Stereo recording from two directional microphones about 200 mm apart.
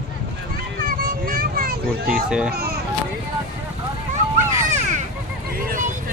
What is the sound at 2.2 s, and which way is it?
Speech, 5° right (ahead or behind).